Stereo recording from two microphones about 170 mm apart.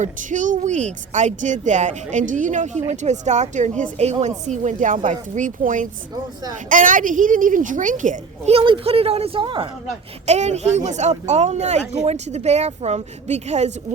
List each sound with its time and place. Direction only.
0.0 s a woman's voice: 50° right (ahead or behind); by 9.6 s 30° right (ahead or behind)
10.2 s a woman's voice: 40° right (ahead or behind)